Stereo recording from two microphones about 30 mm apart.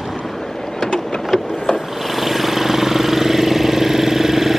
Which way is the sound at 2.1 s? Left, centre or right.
Centre.